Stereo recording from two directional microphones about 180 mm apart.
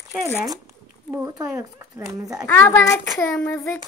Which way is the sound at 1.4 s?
15° right (ahead or behind).